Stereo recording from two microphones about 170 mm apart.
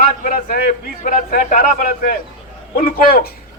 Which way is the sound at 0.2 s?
55° left (ahead or behind).